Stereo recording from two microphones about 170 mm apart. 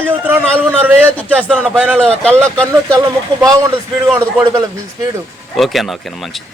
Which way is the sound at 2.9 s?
20° right (ahead or behind).